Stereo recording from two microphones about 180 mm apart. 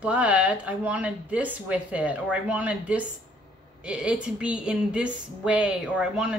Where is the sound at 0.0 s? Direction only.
5° right (ahead or behind).